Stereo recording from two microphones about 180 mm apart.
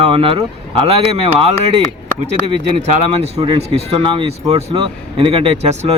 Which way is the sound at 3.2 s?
35° right (ahead or behind).